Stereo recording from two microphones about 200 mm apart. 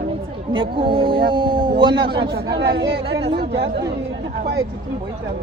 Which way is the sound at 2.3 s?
55° right (ahead or behind).